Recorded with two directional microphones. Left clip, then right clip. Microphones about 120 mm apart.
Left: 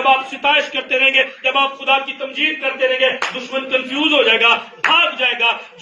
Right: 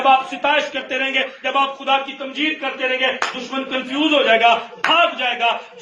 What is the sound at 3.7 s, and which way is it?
A man's voice, 45° right (ahead or behind).